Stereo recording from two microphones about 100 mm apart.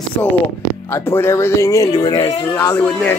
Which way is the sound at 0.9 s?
25° left (ahead or behind).